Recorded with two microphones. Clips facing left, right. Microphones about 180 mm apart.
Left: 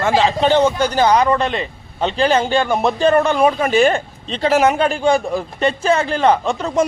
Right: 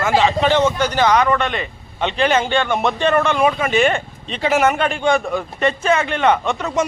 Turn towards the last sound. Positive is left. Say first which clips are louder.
# left 2 dB
turn(degrees=35)  # may be behind; listen again after turning